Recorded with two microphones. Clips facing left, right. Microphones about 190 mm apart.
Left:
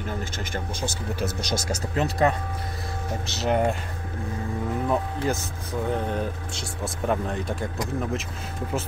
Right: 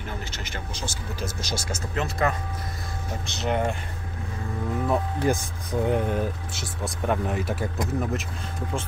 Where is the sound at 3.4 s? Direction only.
40° left (ahead or behind).